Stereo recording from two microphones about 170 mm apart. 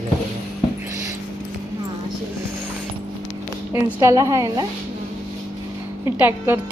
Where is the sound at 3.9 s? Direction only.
20° right (ahead or behind).